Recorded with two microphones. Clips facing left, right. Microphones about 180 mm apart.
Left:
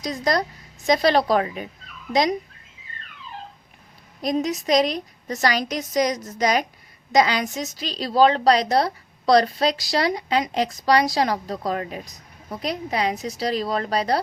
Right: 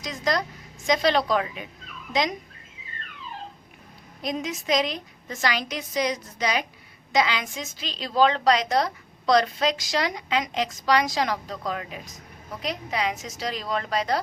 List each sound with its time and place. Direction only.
0.0 s a woman's voice: 35° left (ahead or behind)
4.2 s a woman's voice: 40° left (ahead or behind)